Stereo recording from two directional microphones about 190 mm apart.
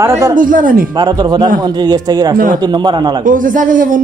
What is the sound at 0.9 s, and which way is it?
Speech, 20° right (ahead or behind).